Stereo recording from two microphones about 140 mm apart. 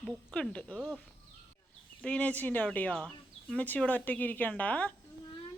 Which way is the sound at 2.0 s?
10° left (ahead or behind).